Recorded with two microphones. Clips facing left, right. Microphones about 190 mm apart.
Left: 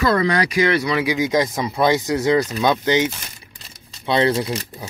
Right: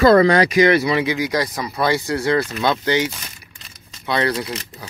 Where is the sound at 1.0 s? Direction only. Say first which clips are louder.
Left 2 dB; 20° left (ahead or behind).